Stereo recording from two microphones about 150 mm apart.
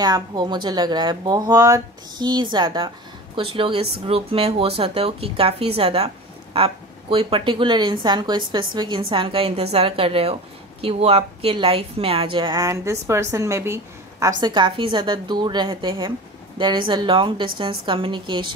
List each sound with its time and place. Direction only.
0.0 s a woman's voice: 30° right (ahead or behind)
14.4 s a woman's voice: 30° right (ahead or behind)